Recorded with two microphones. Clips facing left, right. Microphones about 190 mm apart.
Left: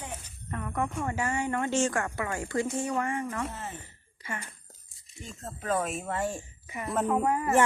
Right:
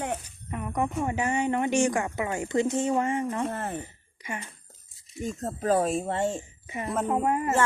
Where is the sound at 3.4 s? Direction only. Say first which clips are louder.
Right 7 dB; 60° right (ahead or behind).